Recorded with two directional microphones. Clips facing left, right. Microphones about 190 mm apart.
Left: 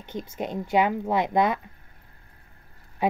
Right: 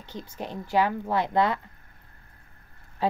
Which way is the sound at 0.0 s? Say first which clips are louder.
Left 5 dB; 20° left (ahead or behind).